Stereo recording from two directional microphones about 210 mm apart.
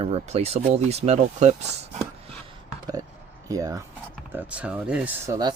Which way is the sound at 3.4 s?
15° right (ahead or behind).